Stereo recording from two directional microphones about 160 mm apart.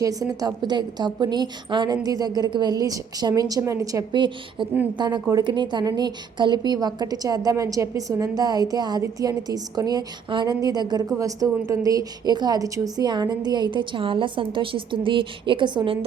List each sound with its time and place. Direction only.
0.0 s a woman's voice: 20° right (ahead or behind)